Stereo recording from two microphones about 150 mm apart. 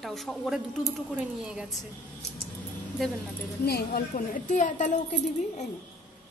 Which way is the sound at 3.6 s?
90° left.